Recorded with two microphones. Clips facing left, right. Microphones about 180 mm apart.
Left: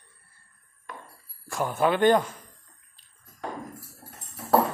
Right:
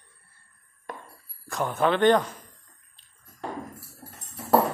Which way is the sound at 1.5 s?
5° left (ahead or behind).